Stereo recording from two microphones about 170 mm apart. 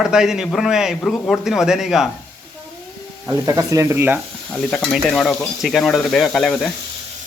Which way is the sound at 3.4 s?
20° right (ahead or behind).